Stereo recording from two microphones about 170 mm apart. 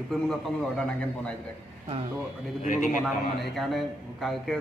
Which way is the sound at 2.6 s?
50° left (ahead or behind).